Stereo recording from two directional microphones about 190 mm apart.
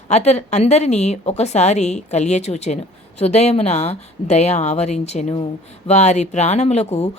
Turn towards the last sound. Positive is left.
turn(degrees=35)  # may be behind; listen again after turning